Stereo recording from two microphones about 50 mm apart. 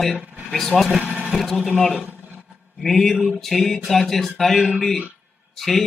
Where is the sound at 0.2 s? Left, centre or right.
Right.